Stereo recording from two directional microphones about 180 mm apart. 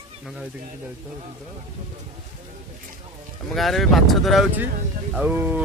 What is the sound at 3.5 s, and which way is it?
Speech, centre (ahead or behind).